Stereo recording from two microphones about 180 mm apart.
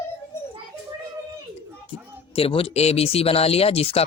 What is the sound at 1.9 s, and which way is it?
Speech, 30° left (ahead or behind).